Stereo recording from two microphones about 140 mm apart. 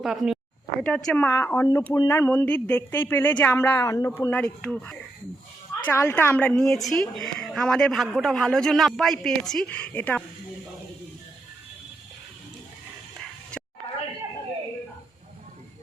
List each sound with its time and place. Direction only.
0.0 s a woman's voice: 5° right (ahead or behind)